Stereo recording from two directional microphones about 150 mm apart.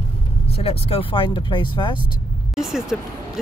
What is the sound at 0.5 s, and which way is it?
Speech, 40° left (ahead or behind).